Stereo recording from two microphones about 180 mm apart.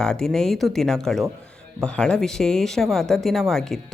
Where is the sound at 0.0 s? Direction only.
5° left (ahead or behind).